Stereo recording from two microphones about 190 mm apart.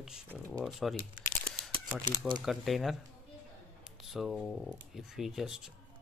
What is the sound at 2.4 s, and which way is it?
Speech, centre (ahead or behind).